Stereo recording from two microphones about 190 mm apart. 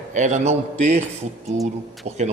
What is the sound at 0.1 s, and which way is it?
Speech, 40° right (ahead or behind).